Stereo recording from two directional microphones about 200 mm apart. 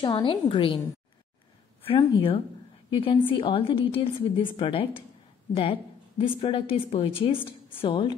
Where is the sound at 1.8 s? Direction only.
25° left (ahead or behind).